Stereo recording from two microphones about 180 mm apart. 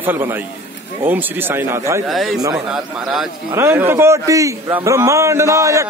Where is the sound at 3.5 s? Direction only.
15° right (ahead or behind).